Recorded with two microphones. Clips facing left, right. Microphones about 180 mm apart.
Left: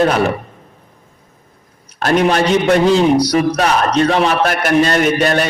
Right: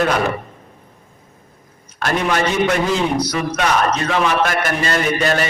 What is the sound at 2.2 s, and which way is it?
A man's voice, 30° left (ahead or behind).